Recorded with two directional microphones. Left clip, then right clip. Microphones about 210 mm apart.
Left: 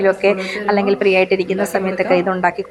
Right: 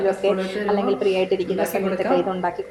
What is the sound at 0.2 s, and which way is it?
Speech, 20° left (ahead or behind).